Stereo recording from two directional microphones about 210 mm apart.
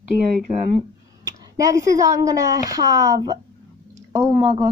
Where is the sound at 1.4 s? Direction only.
15° right (ahead or behind).